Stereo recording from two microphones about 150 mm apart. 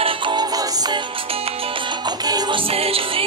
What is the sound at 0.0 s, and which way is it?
Music, 30° right (ahead or behind).